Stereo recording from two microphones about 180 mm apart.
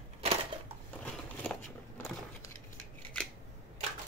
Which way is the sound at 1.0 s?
10° left (ahead or behind).